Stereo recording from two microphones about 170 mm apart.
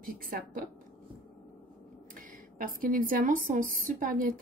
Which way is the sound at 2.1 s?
55° right (ahead or behind).